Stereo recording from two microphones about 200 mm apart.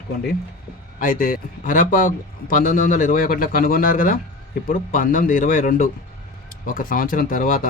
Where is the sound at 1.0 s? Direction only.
45° left (ahead or behind).